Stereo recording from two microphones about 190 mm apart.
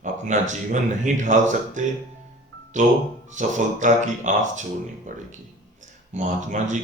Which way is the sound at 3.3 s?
40° right (ahead or behind).